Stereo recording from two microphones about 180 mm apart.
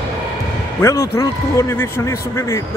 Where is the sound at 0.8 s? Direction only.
20° left (ahead or behind).